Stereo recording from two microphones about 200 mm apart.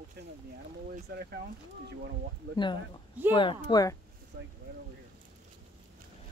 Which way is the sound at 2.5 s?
25° left (ahead or behind).